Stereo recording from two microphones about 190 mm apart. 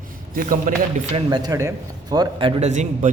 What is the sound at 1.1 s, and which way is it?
A man's voice, 20° right (ahead or behind).